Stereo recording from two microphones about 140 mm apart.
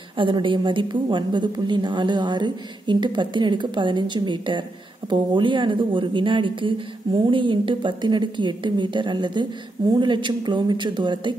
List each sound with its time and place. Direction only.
0.2 s a woman's voice: 35° right (ahead or behind)